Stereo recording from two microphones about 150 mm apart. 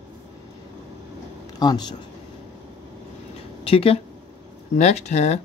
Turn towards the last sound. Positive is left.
turn(degrees=50)  # may be behind; listen again after turning